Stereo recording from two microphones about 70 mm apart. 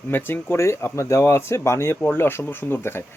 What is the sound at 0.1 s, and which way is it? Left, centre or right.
Speech, left.